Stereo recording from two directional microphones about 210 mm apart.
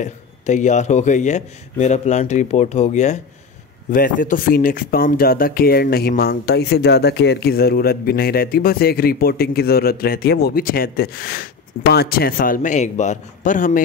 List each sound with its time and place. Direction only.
0.0 s a man's voice: 35° left (ahead or behind)